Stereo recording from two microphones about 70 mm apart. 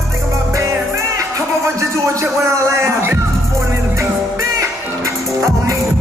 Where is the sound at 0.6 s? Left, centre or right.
Right.